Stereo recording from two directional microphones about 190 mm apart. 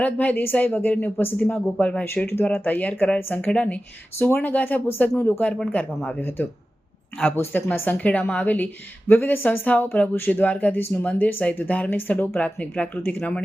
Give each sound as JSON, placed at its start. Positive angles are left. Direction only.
{"t": 0.0, "sound": "speech", "side_deg": 10}